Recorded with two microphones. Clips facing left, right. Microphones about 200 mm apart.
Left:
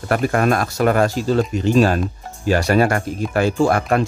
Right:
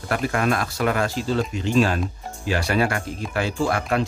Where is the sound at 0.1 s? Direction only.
45° left (ahead or behind).